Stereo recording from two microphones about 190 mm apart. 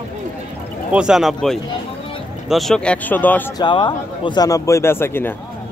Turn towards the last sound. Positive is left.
turn(degrees=10)  # may be behind; listen again after turning